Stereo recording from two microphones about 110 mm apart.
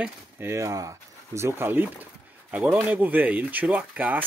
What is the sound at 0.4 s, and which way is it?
Speech, 25° right (ahead or behind).